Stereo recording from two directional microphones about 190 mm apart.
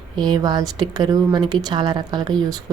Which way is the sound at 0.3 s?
20° right (ahead or behind).